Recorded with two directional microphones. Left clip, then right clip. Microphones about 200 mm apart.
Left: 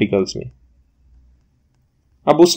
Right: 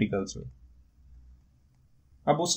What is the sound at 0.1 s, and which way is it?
Speech, 25° left (ahead or behind).